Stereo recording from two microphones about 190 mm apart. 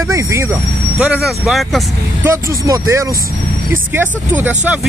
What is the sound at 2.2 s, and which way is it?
Speech, 15° right (ahead or behind).